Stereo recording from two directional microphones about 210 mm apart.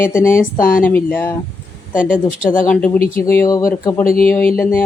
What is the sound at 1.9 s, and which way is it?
Speech, 40° left (ahead or behind).